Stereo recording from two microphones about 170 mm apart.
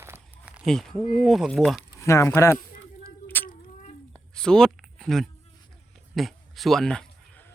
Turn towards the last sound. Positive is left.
turn(degrees=5)  # may be behind; listen again after turning